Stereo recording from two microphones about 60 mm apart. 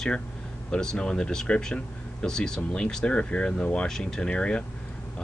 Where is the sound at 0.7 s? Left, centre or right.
Centre.